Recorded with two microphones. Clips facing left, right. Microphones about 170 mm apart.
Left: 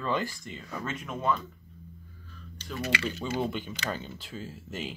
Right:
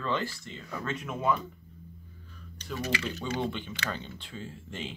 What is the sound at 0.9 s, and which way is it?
Speech, centre (ahead or behind).